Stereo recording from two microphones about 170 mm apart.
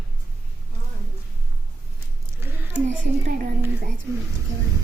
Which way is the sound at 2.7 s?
50° right (ahead or behind).